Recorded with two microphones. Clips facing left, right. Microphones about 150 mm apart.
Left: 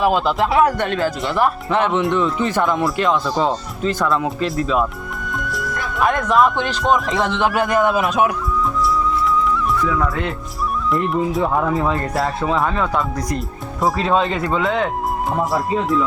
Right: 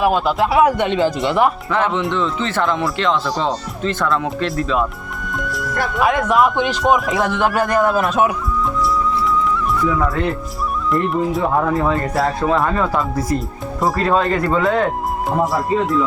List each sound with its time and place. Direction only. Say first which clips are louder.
0.0 s speech: right 1 dB; 5° right (ahead or behind)
1.7 s speech: left 1 dB; 20° left (ahead or behind); by 4.9 s centre (ahead or behind)
5.3 s music: right 2 dB; centre (ahead or behind)
6.0 s speech: even; 5° right (ahead or behind)
10.9 s speech: right 1 dB; centre (ahead or behind)